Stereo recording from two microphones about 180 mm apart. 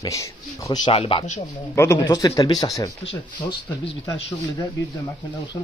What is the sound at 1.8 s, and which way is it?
Speech, 20° left (ahead or behind).